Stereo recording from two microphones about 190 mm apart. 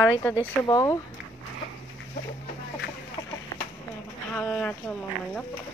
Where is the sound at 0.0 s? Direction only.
10° left (ahead or behind).